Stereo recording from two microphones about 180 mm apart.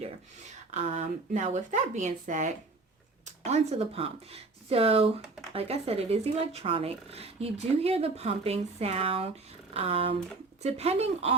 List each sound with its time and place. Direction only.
0.7 s speech: 40° right (ahead or behind)